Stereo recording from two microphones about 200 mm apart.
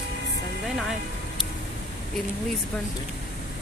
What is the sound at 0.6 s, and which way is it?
Music, centre (ahead or behind).